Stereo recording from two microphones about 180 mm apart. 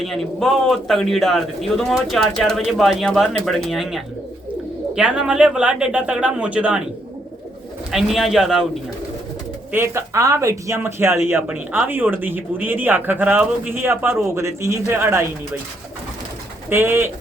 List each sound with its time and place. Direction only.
0.0 s speech: centre (ahead or behind)
7.9 s speech: centre (ahead or behind)
9.7 s speech: 15° right (ahead or behind)
16.6 s speech: 10° right (ahead or behind)